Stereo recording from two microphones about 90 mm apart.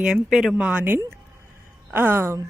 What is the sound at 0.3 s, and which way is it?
Speech, 5° right (ahead or behind).